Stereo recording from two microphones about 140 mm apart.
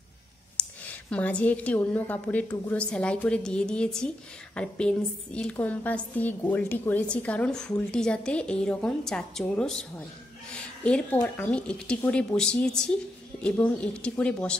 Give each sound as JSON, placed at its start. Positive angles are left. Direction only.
{"t": 0.6, "sound": "a woman's voice", "side_deg": 10}